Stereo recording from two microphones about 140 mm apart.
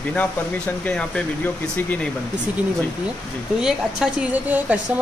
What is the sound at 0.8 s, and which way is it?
Speech, 10° left (ahead or behind).